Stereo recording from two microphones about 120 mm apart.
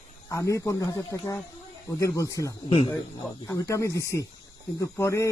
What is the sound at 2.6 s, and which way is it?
Speech, 50° left (ahead or behind).